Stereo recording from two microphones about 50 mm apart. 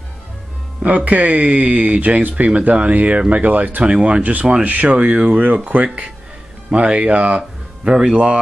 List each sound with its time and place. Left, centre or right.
0.8 s speech: right
6.7 s speech: right